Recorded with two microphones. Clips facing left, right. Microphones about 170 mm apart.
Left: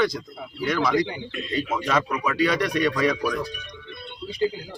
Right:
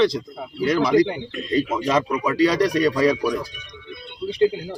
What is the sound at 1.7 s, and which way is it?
Speech, 25° right (ahead or behind).